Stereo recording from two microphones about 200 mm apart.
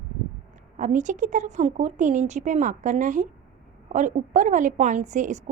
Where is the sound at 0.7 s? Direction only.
40° right (ahead or behind).